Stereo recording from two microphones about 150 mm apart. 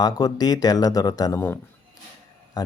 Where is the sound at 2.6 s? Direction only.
25° left (ahead or behind).